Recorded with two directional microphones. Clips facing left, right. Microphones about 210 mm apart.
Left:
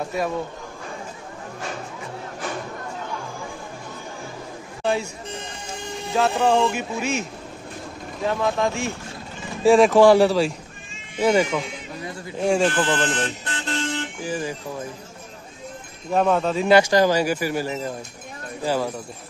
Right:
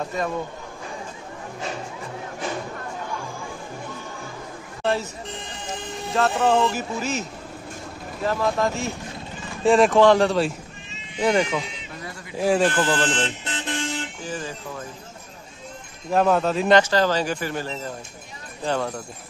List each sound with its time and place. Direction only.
4.8 s speech: centre (ahead or behind)
13.2 s mantra: 15° right (ahead or behind)
14.2 s guitar: 10° left (ahead or behind)
16.1 s speech: centre (ahead or behind)